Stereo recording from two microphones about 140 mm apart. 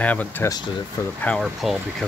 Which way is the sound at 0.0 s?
10° left (ahead or behind).